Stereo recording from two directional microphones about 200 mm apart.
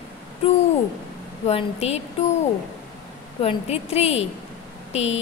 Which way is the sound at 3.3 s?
30° left (ahead or behind).